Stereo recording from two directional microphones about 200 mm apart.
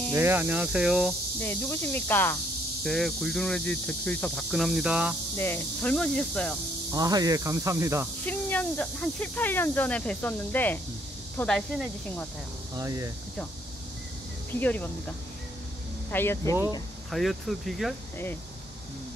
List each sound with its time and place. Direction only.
0.1 s speech: 10° right (ahead or behind)
1.4 s speech: 10° left (ahead or behind)
5.4 s speech: 10° left (ahead or behind)
6.9 s speech: 20° right (ahead or behind)
8.3 s speech: 10° left (ahead or behind)
12.7 s speech: 15° right (ahead or behind)
14.5 s speech: 10° left (ahead or behind)
16.1 s speech: 10° left (ahead or behind)
17.1 s speech: centre (ahead or behind)